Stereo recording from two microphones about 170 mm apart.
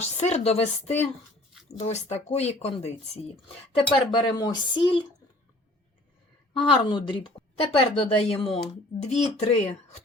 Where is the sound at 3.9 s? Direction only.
25° left (ahead or behind).